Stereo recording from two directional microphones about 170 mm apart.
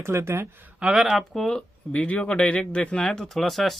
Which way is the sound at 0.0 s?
15° right (ahead or behind).